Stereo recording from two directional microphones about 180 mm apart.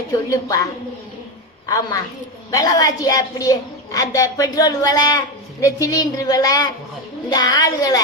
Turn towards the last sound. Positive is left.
turn(degrees=20)  # may be behind; listen again after turning